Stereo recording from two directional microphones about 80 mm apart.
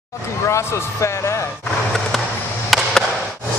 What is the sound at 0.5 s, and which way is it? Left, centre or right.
Speech, left.